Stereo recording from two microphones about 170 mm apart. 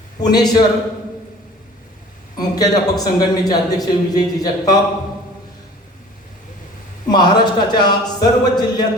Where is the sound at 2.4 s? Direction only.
20° left (ahead or behind).